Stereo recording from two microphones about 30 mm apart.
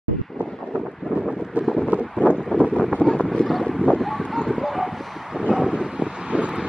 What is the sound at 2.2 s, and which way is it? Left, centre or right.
Wind, left.